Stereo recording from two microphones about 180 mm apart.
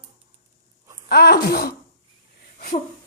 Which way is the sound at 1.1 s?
60° left (ahead or behind).